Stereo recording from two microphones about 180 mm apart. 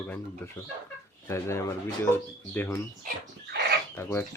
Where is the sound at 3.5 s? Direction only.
70° right (ahead or behind).